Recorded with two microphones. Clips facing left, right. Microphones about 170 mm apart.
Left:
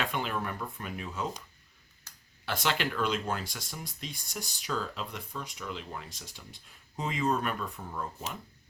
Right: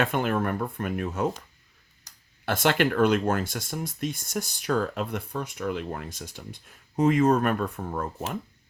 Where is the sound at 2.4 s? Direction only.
50° right (ahead or behind).